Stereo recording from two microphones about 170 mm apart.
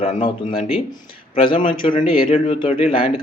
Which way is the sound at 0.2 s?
35° left (ahead or behind).